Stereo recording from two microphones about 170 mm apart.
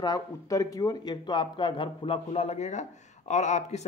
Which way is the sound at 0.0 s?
20° left (ahead or behind).